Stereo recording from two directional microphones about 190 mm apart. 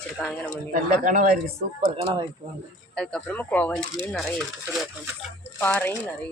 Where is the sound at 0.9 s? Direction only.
45° right (ahead or behind).